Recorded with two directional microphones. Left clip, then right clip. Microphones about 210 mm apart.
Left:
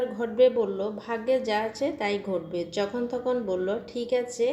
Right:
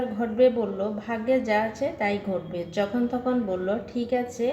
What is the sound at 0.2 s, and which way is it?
A woman's voice, 25° left (ahead or behind).